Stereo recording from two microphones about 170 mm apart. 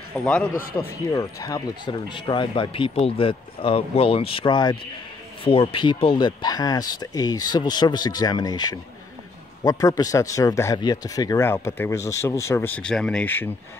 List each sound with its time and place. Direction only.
0.1 s speech: 5° left (ahead or behind)
0.7 s speech: 20° left (ahead or behind)